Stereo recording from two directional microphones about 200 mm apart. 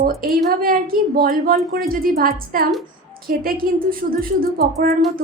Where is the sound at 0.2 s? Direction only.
45° right (ahead or behind).